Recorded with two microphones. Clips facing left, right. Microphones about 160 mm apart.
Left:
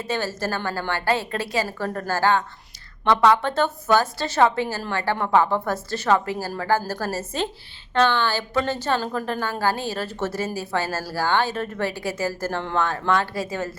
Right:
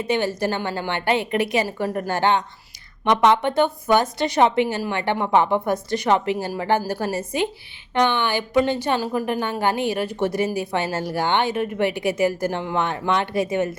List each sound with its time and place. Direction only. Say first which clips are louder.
0.0 s a woman's voice: right 4 dB; 15° right (ahead or behind)